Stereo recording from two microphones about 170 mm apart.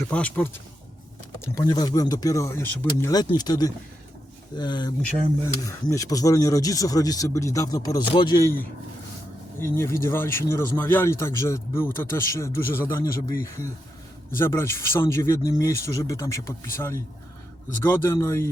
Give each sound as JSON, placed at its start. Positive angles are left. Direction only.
{"t": 0.0, "sound": "a man's voice", "side_deg": 5}
{"t": 1.4, "sound": "speech", "side_deg": 20}
{"t": 9.6, "sound": "a man's voice", "side_deg": 15}